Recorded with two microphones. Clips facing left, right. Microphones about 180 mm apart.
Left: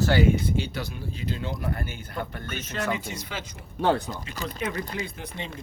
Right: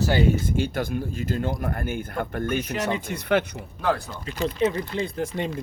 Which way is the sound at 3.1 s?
60° right (ahead or behind).